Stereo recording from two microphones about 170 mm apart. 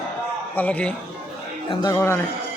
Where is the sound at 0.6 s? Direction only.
10° left (ahead or behind).